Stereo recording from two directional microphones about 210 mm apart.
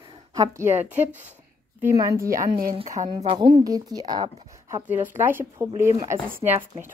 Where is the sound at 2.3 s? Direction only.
40° right (ahead or behind).